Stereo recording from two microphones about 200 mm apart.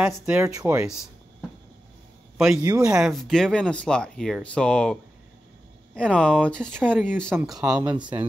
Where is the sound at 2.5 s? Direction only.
15° right (ahead or behind).